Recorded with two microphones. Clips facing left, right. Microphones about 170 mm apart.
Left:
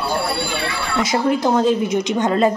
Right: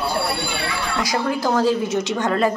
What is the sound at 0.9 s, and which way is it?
Speech, 20° left (ahead or behind).